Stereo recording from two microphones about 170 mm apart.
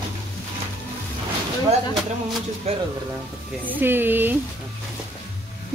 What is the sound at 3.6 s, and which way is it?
Speech, 10° right (ahead or behind).